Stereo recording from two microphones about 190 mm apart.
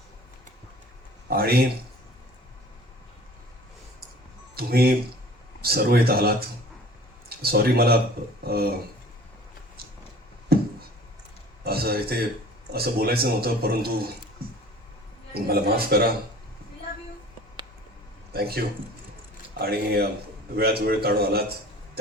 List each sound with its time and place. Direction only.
1.3 s speech: 55° right (ahead or behind)
4.5 s speech: 55° right (ahead or behind)
10.5 s a sound: 55° right (ahead or behind)
11.6 s a man's voice: 55° right (ahead or behind)
15.3 s speech: 55° right (ahead or behind)
18.3 s speech: 55° right (ahead or behind)